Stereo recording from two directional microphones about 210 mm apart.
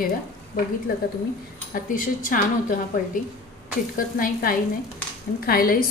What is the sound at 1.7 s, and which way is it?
A woman's voice, 40° left (ahead or behind).